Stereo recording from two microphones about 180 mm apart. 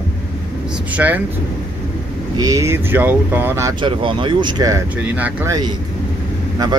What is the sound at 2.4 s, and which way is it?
Speech, 15° right (ahead or behind).